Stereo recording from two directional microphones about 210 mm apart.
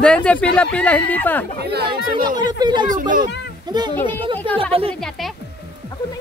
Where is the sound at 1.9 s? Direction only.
20° right (ahead or behind).